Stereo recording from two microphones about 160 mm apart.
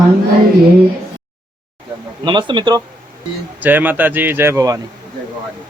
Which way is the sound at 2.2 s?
30° right (ahead or behind).